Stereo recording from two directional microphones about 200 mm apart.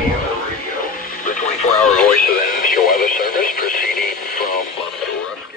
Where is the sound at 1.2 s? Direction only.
35° left (ahead or behind).